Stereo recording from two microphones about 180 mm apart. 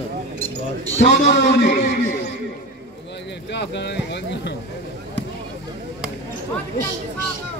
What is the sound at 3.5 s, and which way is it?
Speech, 75° left (ahead or behind).